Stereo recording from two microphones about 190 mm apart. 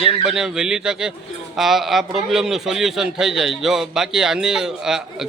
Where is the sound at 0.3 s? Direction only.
5° right (ahead or behind).